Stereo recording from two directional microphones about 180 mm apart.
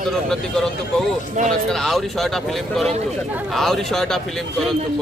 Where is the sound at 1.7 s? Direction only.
Centre (ahead or behind).